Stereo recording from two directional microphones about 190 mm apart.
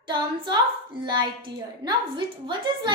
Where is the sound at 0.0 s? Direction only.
25° right (ahead or behind).